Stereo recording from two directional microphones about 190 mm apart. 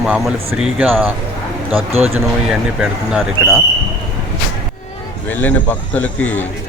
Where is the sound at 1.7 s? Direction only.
30° right (ahead or behind).